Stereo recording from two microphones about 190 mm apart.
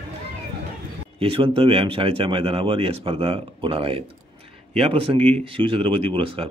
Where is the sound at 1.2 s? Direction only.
30° right (ahead or behind).